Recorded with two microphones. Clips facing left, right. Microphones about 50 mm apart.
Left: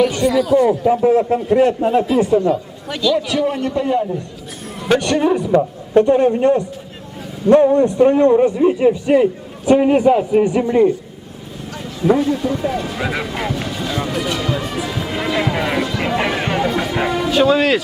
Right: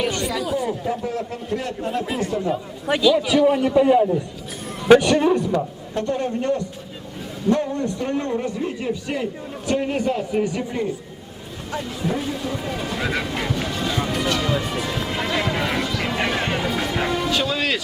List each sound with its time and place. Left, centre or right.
0.0 s speech: centre
0.7 s a man's voice: left
2.1 s speech: centre
2.8 s a man's voice: centre
3.1 s a man's voice: centre
6.0 s a man's voice: left
12.2 s vehicle: centre